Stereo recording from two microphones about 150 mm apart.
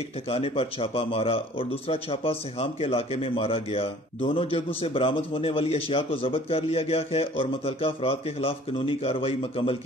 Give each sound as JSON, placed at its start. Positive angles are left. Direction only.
{"t": 0.3, "sound": "speech", "side_deg": 40}